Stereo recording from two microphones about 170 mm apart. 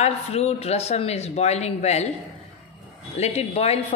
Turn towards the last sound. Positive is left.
turn(degrees=40)  # may be behind; listen again after turning